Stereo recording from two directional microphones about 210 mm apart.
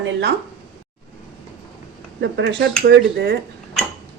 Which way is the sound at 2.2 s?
55° right (ahead or behind).